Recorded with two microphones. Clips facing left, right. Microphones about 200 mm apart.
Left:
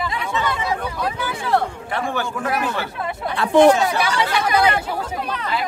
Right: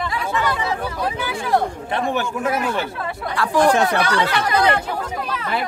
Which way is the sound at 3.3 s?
25° left (ahead or behind).